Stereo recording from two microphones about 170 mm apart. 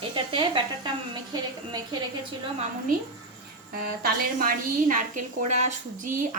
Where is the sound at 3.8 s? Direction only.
60° right (ahead or behind).